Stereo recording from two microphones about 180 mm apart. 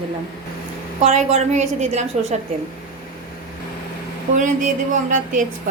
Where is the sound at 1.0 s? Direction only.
35° right (ahead or behind).